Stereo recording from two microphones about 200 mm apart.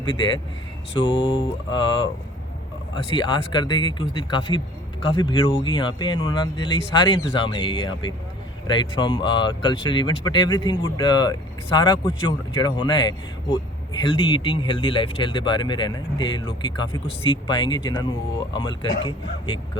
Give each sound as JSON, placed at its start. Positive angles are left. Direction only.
{"t": 0.0, "sound": "speech", "side_deg": 25}